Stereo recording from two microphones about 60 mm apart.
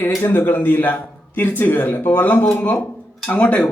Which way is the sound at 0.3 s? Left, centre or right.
Left.